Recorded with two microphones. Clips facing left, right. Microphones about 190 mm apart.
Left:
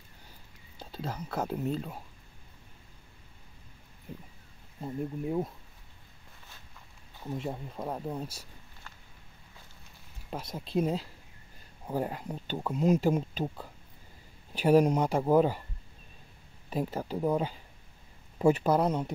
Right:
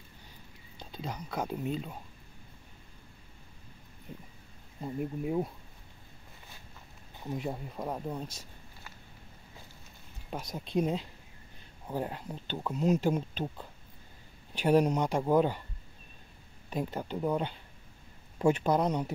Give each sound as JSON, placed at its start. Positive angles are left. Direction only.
{"t": 0.7, "sound": "speech", "side_deg": 5}
{"t": 4.1, "sound": "speech", "side_deg": 0}
{"t": 7.3, "sound": "speech", "side_deg": -5}
{"t": 10.3, "sound": "speech", "side_deg": 0}
{"t": 14.7, "sound": "speech", "side_deg": 5}
{"t": 16.7, "sound": "speech", "side_deg": 5}